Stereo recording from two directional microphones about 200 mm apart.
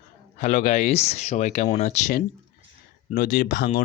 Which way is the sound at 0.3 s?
35° left (ahead or behind).